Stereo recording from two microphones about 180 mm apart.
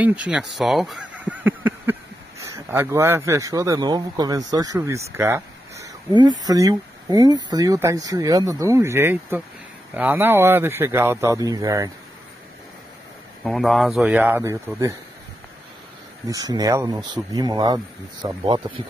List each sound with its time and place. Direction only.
0.0 s speech: 5° right (ahead or behind)
6.4 s speech: 20° right (ahead or behind)
13.4 s speech: centre (ahead or behind); by 15.0 s 15° right (ahead or behind)
16.3 s speech: 20° right (ahead or behind)